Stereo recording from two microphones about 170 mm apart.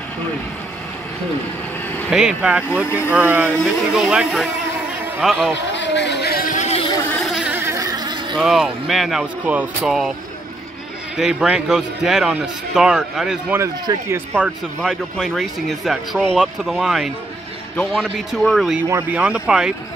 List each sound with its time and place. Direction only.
2.1 s speech: 5° right (ahead or behind)
2.7 s speech: 15° left (ahead or behind)
3.1 s speech: 10° right (ahead or behind)
3.5 s speech: centre (ahead or behind)
5.7 s a sound: 90° left; by 6.9 s 40° left (ahead or behind)
7.1 s insect: centre (ahead or behind); by 8.4 s 25° right (ahead or behind)
8.4 s speech: 5° right (ahead or behind)
11.1 s speech: 5° right (ahead or behind)
13.6 s speech: 15° right (ahead or behind)